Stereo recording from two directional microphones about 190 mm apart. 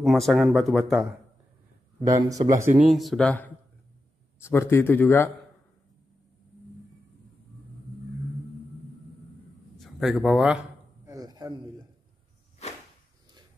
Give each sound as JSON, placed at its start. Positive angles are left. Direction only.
{"t": 0.0, "sound": "speech", "side_deg": 0}
{"t": 2.0, "sound": "speech", "side_deg": -20}
{"t": 2.8, "sound": "a man's voice", "side_deg": 0}
{"t": 9.8, "sound": "speech", "side_deg": 0}
{"t": 11.1, "sound": "a sound", "side_deg": -20}